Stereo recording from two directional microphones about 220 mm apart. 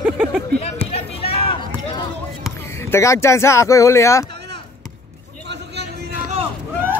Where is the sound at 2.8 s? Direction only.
10° left (ahead or behind).